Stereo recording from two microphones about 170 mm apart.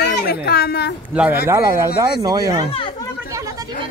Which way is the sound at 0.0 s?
70° left (ahead or behind).